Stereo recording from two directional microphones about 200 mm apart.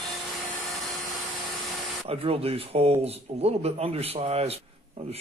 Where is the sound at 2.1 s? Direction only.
30° right (ahead or behind).